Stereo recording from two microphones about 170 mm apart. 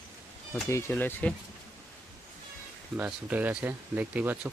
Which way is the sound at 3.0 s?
10° right (ahead or behind).